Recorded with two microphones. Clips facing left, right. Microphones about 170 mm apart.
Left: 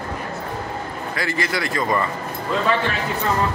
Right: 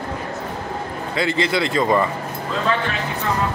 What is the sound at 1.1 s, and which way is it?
Speech, 20° right (ahead or behind).